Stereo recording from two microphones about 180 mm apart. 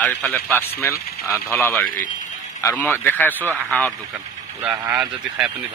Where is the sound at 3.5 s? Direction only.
15° right (ahead or behind).